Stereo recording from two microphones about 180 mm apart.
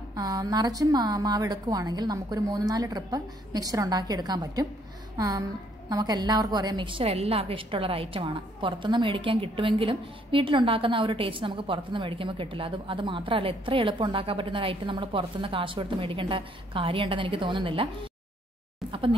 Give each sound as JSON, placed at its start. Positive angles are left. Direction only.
{"t": 0.1, "sound": "a woman's voice", "side_deg": -20}
{"t": 18.9, "sound": "speech", "side_deg": -30}